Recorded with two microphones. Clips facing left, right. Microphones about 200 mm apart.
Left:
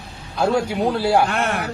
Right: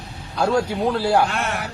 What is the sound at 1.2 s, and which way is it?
Speech, 55° left (ahead or behind).